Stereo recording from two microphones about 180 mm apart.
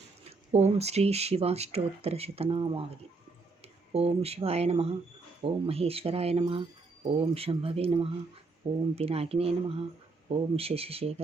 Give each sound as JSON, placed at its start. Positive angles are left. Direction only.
{"t": 0.3, "sound": "speech", "side_deg": -35}
{"t": 3.9, "sound": "speech", "side_deg": -35}